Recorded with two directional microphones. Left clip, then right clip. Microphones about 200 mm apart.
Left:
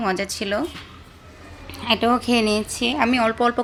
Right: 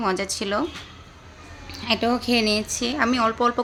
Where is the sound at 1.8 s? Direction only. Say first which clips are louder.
Left 3 dB; centre (ahead or behind).